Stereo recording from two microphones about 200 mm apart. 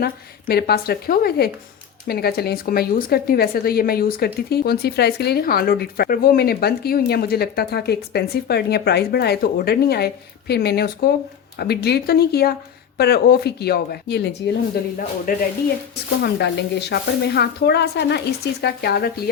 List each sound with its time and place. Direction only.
0.0 s speech: 50° left (ahead or behind)
15.3 s speech: 45° left (ahead or behind)
16.2 s speech: 55° left (ahead or behind)